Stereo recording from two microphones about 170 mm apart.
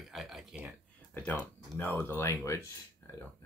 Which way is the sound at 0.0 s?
Centre (ahead or behind).